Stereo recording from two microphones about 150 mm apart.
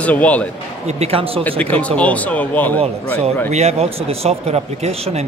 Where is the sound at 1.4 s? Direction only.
10° left (ahead or behind).